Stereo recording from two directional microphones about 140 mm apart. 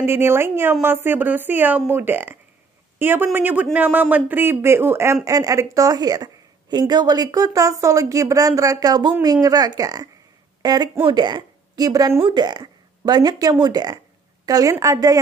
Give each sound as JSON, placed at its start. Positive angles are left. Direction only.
{"t": 0.0, "sound": "a woman's voice", "side_deg": -15}